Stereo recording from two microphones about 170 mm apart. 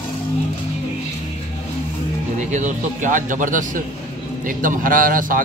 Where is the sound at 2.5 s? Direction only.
45° right (ahead or behind).